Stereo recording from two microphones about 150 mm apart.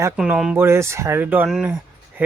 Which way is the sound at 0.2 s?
5° right (ahead or behind).